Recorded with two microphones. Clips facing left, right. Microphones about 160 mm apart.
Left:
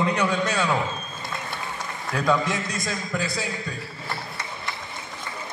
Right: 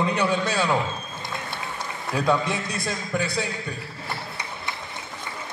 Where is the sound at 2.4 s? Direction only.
60° right (ahead or behind).